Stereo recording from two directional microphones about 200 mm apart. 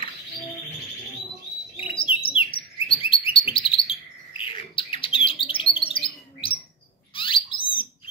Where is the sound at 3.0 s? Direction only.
25° left (ahead or behind).